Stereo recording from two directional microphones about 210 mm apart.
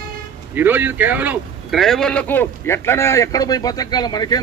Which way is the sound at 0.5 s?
10° right (ahead or behind).